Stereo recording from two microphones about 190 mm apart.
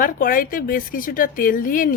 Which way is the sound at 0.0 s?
45° left (ahead or behind).